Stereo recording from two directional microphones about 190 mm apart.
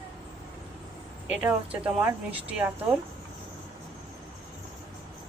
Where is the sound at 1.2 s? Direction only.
10° right (ahead or behind).